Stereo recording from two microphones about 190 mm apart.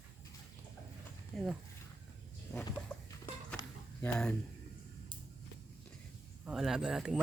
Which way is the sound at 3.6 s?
20° left (ahead or behind).